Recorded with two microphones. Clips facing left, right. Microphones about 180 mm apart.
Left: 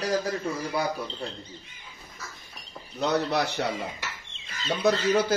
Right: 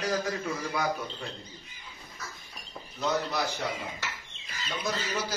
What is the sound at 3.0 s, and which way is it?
Speech, 70° left (ahead or behind).